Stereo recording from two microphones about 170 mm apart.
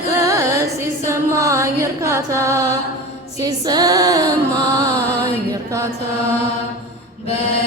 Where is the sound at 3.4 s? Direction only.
25° right (ahead or behind).